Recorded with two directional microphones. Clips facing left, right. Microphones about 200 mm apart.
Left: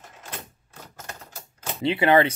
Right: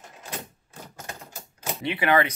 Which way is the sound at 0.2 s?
10° right (ahead or behind).